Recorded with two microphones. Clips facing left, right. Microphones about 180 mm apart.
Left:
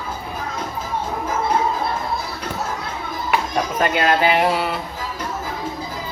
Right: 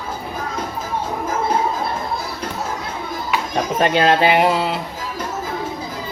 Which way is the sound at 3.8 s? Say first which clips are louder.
Right 3 dB; 25° right (ahead or behind).